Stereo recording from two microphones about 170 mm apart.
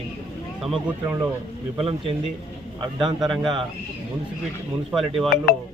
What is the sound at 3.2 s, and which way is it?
Speech, centre (ahead or behind).